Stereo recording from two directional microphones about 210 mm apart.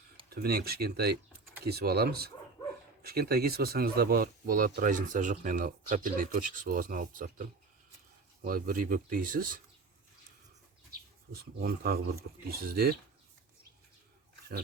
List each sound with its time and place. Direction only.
0.3 s speech: 45° right (ahead or behind)
11.6 s speech: 45° right (ahead or behind)